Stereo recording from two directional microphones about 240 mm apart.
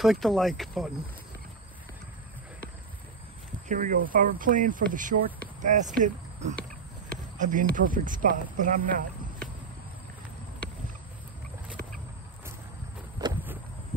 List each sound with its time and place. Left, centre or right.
0.0 s speech: centre
3.6 s speech: right
13.2 s walk: centre